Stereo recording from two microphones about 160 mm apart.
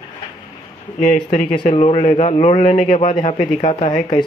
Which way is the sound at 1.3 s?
50° left (ahead or behind).